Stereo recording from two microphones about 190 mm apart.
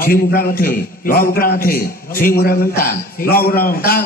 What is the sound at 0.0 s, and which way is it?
A man's voice, 50° left (ahead or behind).